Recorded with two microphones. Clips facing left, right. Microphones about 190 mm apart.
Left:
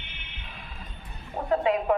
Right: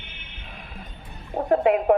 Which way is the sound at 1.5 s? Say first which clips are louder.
Right 5 dB; 55° right (ahead or behind).